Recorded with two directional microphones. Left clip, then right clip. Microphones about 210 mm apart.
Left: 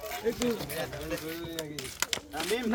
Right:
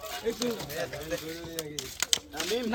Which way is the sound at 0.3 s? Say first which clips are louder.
Left 1 dB; 55° left (ahead or behind).